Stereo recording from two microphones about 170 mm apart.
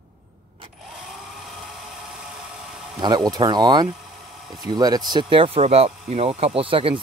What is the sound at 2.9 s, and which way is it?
Speech, 25° right (ahead or behind).